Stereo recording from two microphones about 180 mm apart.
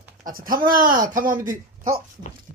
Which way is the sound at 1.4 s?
50° right (ahead or behind).